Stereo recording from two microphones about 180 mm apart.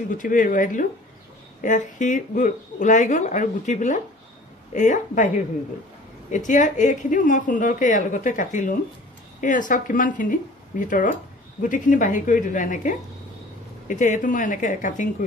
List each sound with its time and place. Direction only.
0.2 s speech: 45° left (ahead or behind)
6.3 s speech: 45° left (ahead or behind)